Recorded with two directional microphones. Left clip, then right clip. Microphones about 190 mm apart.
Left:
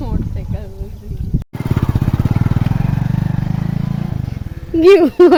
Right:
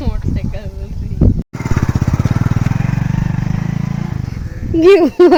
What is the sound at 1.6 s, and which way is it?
Vehicle, centre (ahead or behind).